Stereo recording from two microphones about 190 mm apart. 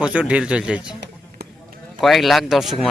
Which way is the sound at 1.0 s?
55° right (ahead or behind).